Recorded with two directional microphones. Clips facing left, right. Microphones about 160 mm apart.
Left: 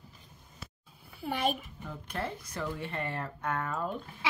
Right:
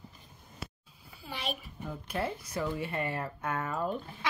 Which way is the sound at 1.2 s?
50° left (ahead or behind).